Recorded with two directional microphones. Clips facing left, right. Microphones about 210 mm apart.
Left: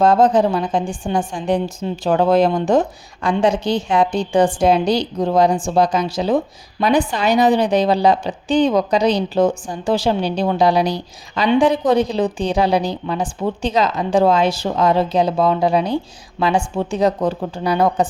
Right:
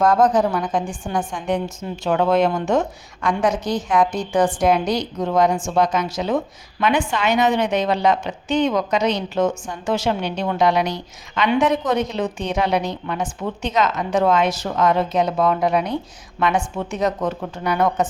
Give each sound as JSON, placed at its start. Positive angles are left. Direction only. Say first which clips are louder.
{"t": 0.0, "sound": "a woman's voice", "louder": "left 3 dB", "side_deg": 30}